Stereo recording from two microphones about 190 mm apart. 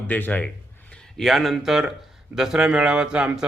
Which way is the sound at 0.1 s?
10° left (ahead or behind).